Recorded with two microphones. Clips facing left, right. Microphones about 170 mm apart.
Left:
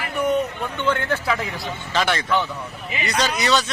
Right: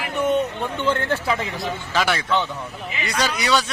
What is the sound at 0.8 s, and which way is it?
Speech, 30° right (ahead or behind).